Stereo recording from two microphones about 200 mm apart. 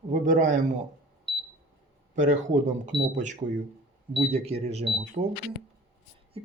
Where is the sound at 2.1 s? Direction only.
35° right (ahead or behind).